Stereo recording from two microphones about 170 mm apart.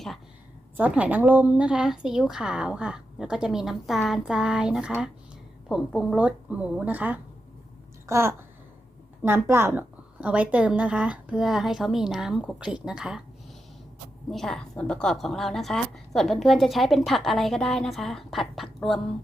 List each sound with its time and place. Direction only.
0.8 s a woman's voice: 10° right (ahead or behind)
14.3 s a woman's voice: centre (ahead or behind)